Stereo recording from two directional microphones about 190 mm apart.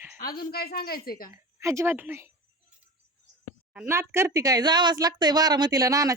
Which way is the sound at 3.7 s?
10° right (ahead or behind).